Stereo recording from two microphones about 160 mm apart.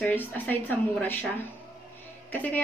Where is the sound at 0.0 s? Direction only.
10° left (ahead or behind).